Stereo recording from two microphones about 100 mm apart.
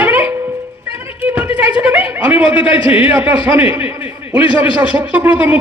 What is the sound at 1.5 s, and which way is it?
A man's voice, 15° right (ahead or behind).